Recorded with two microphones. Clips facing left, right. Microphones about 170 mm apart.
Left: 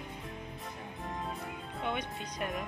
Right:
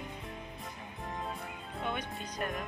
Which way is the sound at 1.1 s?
Centre (ahead or behind).